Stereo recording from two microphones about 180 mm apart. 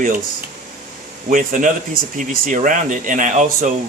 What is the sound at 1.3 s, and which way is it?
Speech, 45° right (ahead or behind).